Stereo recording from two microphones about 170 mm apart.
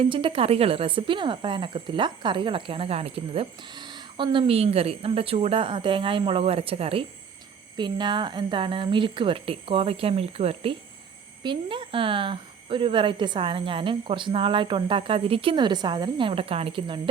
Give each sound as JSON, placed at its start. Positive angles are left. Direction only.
{"t": 0.0, "sound": "a woman's voice", "side_deg": -30}